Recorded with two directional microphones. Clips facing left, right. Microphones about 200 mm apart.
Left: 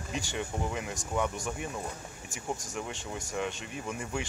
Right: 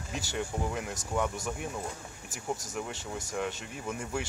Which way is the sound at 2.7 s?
5° right (ahead or behind).